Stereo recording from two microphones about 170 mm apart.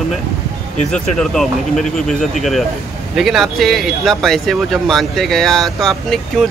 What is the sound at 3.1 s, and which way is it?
Speech, centre (ahead or behind).